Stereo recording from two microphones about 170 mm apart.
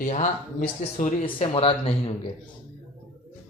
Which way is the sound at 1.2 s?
30° left (ahead or behind).